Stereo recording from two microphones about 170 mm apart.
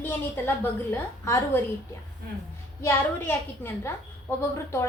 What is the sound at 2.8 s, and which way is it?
A woman's voice, 15° left (ahead or behind).